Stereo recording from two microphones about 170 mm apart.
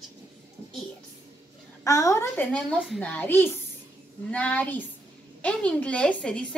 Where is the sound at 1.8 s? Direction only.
20° left (ahead or behind).